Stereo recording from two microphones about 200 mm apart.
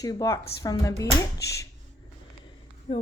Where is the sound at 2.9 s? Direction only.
25° left (ahead or behind).